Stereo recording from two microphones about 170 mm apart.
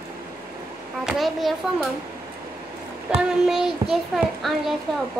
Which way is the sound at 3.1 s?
5° right (ahead or behind).